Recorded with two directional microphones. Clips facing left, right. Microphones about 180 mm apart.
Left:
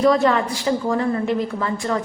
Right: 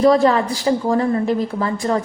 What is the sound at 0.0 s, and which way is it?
A woman's voice, 35° right (ahead or behind).